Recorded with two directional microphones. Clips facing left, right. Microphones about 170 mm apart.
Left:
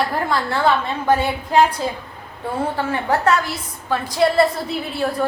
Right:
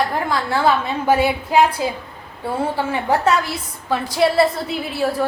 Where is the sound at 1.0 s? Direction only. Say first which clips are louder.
Right 3 dB; 10° right (ahead or behind).